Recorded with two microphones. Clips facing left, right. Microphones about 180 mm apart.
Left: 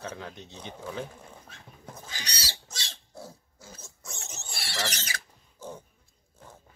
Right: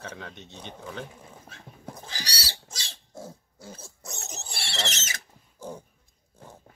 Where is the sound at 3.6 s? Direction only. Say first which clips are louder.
Right 5 dB; 30° right (ahead or behind).